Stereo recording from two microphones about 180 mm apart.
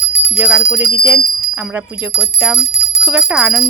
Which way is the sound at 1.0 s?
15° right (ahead or behind).